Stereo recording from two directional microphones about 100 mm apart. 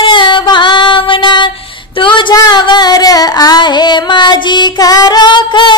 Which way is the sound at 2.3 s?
40° left (ahead or behind).